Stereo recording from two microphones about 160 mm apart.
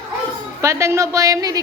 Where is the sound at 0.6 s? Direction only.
20° right (ahead or behind).